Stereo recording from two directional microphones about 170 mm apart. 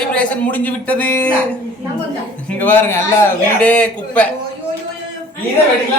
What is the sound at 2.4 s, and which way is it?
Speech, 10° left (ahead or behind).